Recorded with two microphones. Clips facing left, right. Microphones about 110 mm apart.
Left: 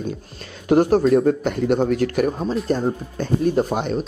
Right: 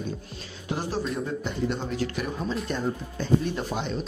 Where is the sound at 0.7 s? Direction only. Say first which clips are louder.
Left 15 dB; 60° left (ahead or behind).